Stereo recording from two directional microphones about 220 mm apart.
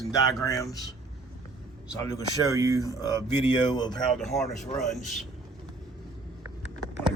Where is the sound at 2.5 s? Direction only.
15° right (ahead or behind).